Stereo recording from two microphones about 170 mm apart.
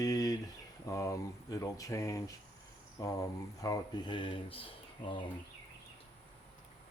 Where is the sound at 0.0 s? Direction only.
20° left (ahead or behind).